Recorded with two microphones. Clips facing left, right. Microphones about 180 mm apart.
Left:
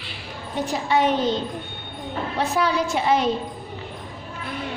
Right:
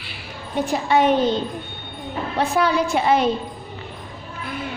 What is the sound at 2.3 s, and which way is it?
Speech, 55° right (ahead or behind).